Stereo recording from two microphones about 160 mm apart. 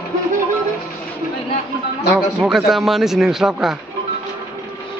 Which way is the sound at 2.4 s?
5° right (ahead or behind).